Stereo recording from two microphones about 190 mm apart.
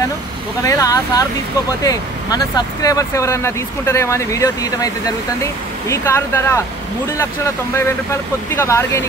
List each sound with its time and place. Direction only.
0.6 s speech: 15° left (ahead or behind)
7.7 s speech: 15° left (ahead or behind)